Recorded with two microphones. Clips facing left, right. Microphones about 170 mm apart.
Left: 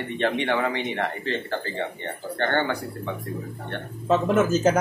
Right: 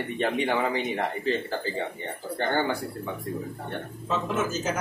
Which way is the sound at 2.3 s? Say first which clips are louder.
Left 2 dB; 10° right (ahead or behind).